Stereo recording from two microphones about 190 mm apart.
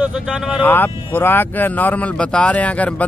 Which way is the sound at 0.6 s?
10° left (ahead or behind).